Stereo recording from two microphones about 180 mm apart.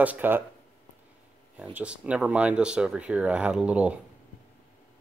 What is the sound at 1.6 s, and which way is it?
Speech, 5° right (ahead or behind).